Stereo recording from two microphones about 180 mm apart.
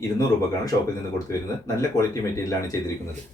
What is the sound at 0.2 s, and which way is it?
Speech, 20° left (ahead or behind).